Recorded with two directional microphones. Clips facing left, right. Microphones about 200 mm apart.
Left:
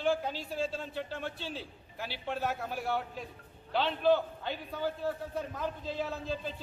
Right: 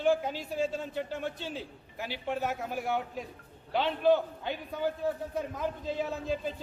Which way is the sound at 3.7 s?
15° right (ahead or behind).